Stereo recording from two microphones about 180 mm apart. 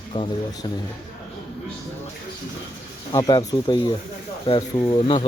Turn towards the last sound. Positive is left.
turn(degrees=30)  # may be behind; listen again after turning